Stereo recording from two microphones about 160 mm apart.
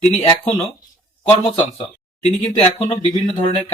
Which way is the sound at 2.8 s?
30° left (ahead or behind).